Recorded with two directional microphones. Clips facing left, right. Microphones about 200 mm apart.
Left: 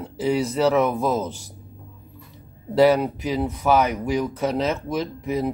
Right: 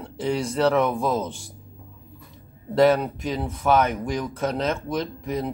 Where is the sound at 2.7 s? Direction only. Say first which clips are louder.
Left 2 dB; 5° left (ahead or behind).